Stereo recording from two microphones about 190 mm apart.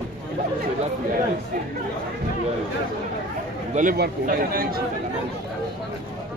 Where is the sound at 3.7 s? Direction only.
50° right (ahead or behind).